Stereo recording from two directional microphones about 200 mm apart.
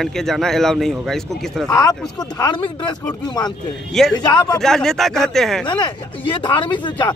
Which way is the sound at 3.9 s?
Centre (ahead or behind).